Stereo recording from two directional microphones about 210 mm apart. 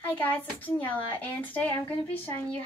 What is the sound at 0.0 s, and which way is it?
Speech, 10° left (ahead or behind).